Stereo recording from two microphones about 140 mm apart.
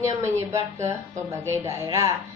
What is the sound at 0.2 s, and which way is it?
A woman's voice, 20° right (ahead or behind).